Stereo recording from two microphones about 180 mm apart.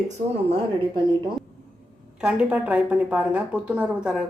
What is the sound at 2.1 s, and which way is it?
A woman's voice, 5° right (ahead or behind).